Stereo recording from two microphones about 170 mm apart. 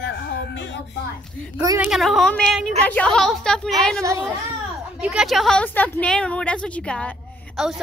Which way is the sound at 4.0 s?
20° right (ahead or behind).